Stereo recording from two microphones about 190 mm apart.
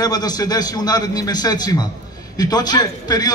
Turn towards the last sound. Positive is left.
turn(degrees=20)  # may be behind; listen again after turning